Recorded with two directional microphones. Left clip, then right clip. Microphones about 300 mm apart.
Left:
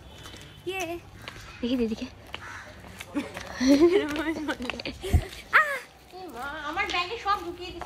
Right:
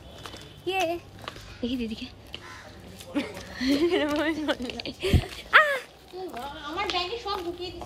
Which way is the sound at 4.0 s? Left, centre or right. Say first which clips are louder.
Right 1 dB; centre.